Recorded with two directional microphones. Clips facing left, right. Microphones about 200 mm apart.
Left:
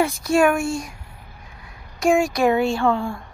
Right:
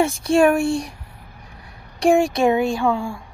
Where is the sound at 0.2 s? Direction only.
30° right (ahead or behind).